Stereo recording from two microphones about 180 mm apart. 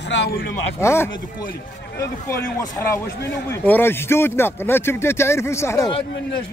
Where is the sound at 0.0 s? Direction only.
75° left (ahead or behind).